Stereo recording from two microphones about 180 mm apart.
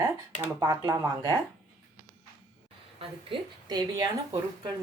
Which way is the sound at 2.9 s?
25° right (ahead or behind).